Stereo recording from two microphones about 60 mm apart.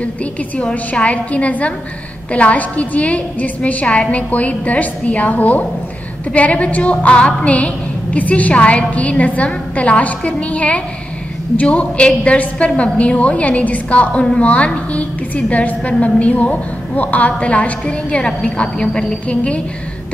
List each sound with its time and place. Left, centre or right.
0.0 s a woman's voice: left